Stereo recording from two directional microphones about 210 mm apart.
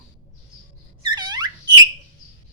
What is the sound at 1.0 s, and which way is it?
Squeak, 20° right (ahead or behind).